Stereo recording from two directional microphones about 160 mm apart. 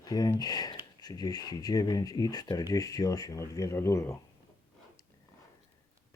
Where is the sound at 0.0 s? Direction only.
25° left (ahead or behind).